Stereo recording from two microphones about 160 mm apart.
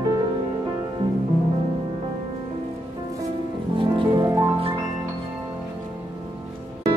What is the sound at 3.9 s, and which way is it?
Music, 30° right (ahead or behind).